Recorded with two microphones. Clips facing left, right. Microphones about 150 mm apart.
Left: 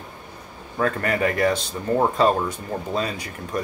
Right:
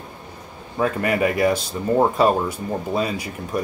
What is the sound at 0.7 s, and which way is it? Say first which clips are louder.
Speech: right 2 dB; 10° right (ahead or behind).